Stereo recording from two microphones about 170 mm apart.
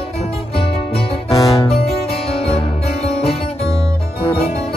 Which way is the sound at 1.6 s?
35° left (ahead or behind).